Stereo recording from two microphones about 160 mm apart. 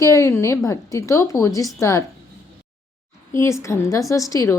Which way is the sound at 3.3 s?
15° left (ahead or behind).